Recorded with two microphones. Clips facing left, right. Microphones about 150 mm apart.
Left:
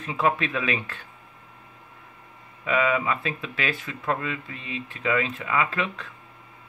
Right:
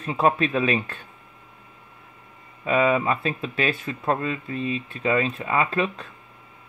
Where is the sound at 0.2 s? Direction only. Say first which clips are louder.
Right 4 dB; 35° right (ahead or behind).